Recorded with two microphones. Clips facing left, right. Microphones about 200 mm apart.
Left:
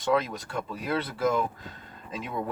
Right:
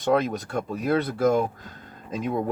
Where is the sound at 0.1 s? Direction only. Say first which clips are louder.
Right 4 dB; 45° right (ahead or behind).